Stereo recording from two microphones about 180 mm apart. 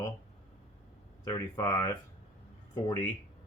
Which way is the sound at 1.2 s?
20° left (ahead or behind).